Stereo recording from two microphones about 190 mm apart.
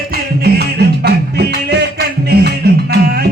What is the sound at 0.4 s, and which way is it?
Music, 60° right (ahead or behind).